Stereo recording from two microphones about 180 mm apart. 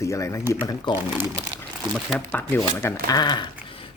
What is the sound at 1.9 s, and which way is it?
Speech, centre (ahead or behind).